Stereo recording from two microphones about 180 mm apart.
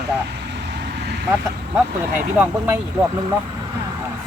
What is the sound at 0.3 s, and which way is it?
Vehicle, 70° right (ahead or behind).